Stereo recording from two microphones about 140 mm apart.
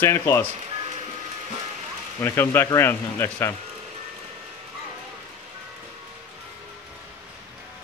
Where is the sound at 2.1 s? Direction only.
20° left (ahead or behind).